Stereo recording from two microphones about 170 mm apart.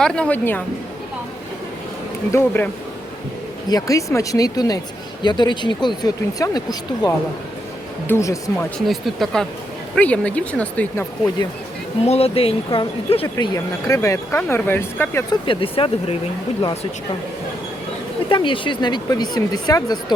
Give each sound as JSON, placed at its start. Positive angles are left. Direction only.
{"t": 0.0, "sound": "speech", "side_deg": 5}
{"t": 2.3, "sound": "speech", "side_deg": 15}
{"t": 3.7, "sound": "speech", "side_deg": 20}
{"t": 8.9, "sound": "speech", "side_deg": 0}
{"t": 12.0, "sound": "speech", "side_deg": 35}
{"t": 13.2, "sound": "speech", "side_deg": 20}
{"t": 15.3, "sound": "speech", "side_deg": 30}
{"t": 18.3, "sound": "speech", "side_deg": 30}